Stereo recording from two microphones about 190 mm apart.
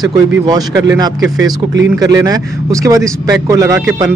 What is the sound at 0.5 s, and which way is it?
A man's voice, 20° right (ahead or behind).